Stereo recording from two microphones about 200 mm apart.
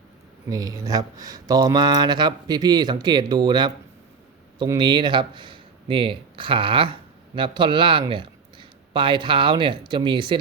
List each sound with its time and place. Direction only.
0.5 s a man's voice: 20° right (ahead or behind)